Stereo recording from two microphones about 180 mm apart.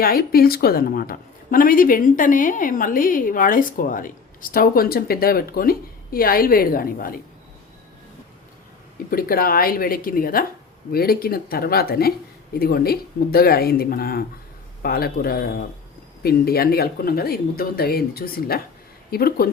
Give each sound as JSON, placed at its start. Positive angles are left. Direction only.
{"t": 0.0, "sound": "a woman's voice", "side_deg": 55}
{"t": 9.0, "sound": "speech", "side_deg": 55}